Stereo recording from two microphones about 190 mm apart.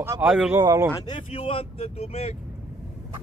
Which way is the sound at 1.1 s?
30° left (ahead or behind).